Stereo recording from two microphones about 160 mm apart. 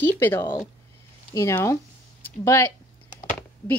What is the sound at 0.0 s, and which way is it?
Speech, 15° left (ahead or behind).